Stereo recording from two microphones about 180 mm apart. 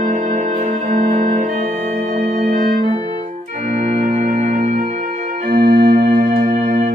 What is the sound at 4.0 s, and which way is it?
Music, 40° right (ahead or behind).